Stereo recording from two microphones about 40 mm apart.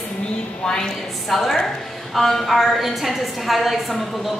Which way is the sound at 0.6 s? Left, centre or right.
Centre.